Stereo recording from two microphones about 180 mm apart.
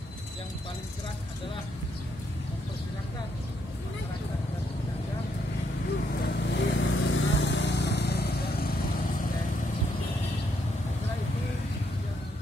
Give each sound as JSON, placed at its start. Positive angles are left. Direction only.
{"t": 6.2, "sound": "vehicle", "side_deg": 85}